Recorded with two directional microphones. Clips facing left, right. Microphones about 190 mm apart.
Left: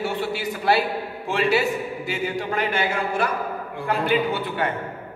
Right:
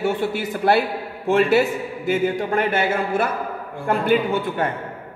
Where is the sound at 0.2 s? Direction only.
50° right (ahead or behind).